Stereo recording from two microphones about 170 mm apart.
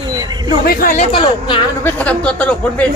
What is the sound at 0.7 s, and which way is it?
Speech, 60° left (ahead or behind).